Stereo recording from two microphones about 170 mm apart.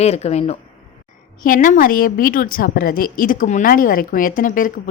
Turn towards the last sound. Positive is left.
turn(degrees=55)  # may be behind; listen again after turning